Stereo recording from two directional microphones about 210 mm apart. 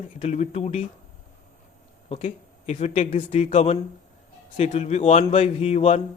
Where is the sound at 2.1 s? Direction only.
30° left (ahead or behind).